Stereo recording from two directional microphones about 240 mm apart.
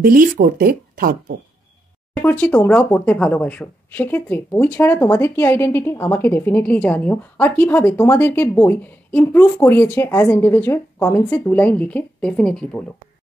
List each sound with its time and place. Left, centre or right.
0.0 s speech: right
2.1 s speech: centre